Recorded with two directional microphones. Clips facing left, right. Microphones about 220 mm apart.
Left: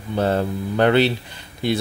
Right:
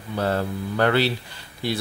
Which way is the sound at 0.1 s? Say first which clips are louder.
Left 4 dB; 20° left (ahead or behind).